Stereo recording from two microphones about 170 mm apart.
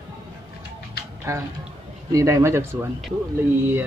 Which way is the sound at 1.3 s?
15° right (ahead or behind).